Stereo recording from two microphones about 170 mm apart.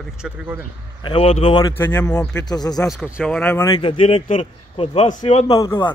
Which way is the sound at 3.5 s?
25° left (ahead or behind).